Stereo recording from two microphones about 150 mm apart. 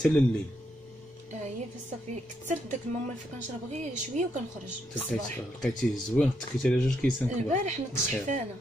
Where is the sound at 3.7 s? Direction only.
55° right (ahead or behind).